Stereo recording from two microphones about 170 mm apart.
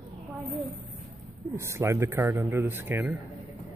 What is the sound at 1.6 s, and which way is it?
Speech, 15° right (ahead or behind).